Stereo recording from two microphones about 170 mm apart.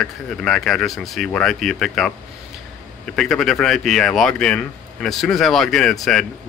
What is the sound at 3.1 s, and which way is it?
Speech, centre (ahead or behind).